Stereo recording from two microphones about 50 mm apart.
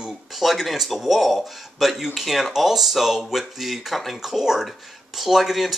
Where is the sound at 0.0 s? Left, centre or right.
Centre.